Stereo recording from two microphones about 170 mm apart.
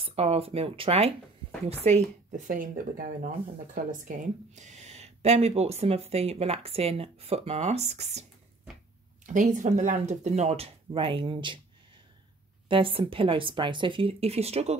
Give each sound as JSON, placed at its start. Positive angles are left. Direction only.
{"t": 0.0, "sound": "speech", "side_deg": -35}
{"t": 1.9, "sound": "speech", "side_deg": -45}
{"t": 12.6, "sound": "speech", "side_deg": -30}